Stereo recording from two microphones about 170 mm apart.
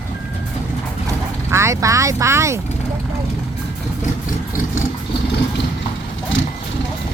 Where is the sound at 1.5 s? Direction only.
15° right (ahead or behind).